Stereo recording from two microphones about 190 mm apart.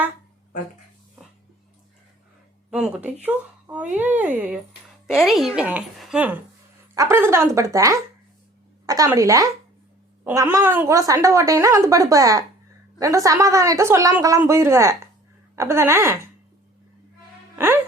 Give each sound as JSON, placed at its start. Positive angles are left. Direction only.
{"t": 2.6, "sound": "a woman's voice", "side_deg": -5}